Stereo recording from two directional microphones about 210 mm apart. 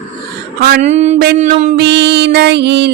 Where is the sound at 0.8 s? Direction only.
30° right (ahead or behind).